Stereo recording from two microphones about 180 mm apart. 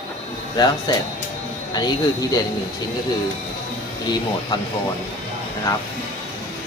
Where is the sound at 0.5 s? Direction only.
20° left (ahead or behind).